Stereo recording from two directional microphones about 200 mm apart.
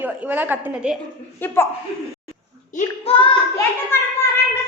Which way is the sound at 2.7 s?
30° left (ahead or behind).